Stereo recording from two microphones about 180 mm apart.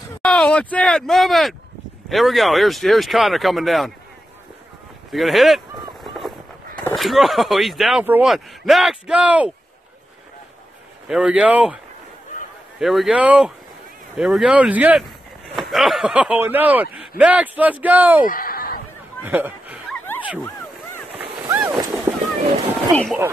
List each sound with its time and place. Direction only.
0.2 s speech: 5° left (ahead or behind)
5.1 s speech: centre (ahead or behind)
7.0 s speech: centre (ahead or behind)
11.1 s speech: 5° right (ahead or behind)
18.2 s speech: 50° left (ahead or behind)
19.2 s a sound: 10° right (ahead or behind)
21.4 s boat: 10° right (ahead or behind)
22.4 s a sound: 35° right (ahead or behind)